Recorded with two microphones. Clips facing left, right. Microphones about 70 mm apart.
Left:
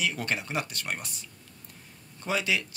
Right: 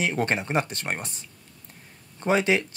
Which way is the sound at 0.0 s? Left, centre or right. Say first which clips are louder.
Right 5 dB; right.